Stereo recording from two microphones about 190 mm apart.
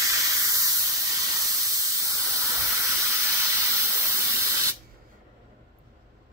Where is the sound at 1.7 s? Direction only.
15° right (ahead or behind).